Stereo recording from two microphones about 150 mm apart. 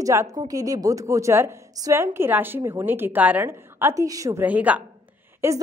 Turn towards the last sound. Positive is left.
turn(degrees=-15)  # may be behind; listen again after turning